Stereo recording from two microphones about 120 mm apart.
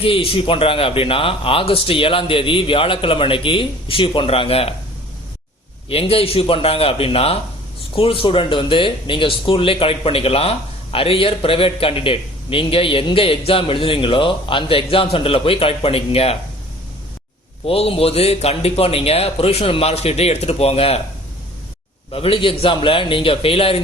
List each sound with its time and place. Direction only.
0.0 s a man's voice: 50° left (ahead or behind)
5.9 s a man's voice: 55° left (ahead or behind)
17.7 s a man's voice: 50° left (ahead or behind)
22.1 s a man's voice: 50° left (ahead or behind)